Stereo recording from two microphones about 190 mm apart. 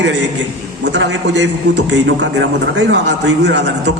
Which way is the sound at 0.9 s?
70° right (ahead or behind).